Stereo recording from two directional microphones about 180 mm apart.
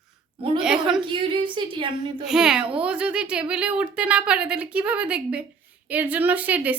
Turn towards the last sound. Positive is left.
turn(degrees=-10)  # may be behind; listen again after turning